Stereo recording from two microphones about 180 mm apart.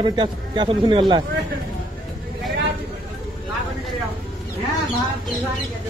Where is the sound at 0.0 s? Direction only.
25° right (ahead or behind).